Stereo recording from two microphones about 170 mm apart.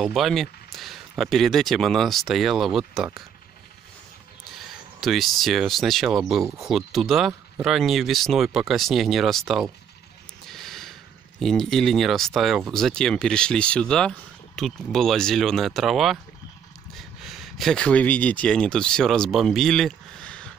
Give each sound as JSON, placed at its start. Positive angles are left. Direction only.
{"t": 0.0, "sound": "speech", "side_deg": 0}
{"t": 4.6, "sound": "speech", "side_deg": 0}
{"t": 10.5, "sound": "a sound", "side_deg": 0}
{"t": 12.4, "sound": "speech", "side_deg": 0}
{"t": 17.2, "sound": "speech", "side_deg": 0}